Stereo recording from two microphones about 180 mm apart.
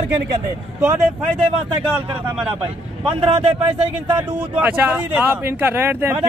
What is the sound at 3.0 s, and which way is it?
A man's voice, 30° right (ahead or behind).